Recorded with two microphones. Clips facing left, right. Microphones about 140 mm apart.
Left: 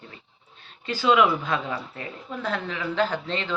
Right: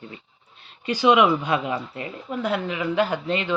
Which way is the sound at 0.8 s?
15° right (ahead or behind).